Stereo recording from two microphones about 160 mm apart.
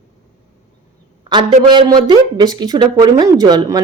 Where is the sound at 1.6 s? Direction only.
25° right (ahead or behind).